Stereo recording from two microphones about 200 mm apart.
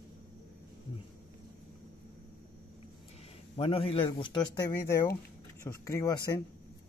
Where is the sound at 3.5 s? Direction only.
25° left (ahead or behind).